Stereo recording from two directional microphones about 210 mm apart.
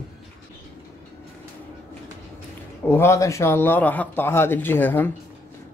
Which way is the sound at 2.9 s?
10° left (ahead or behind).